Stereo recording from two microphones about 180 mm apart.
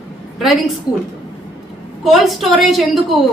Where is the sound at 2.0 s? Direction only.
Centre (ahead or behind).